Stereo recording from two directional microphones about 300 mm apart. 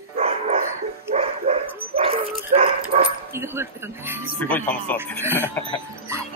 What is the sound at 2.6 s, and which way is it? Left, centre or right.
Speech, right.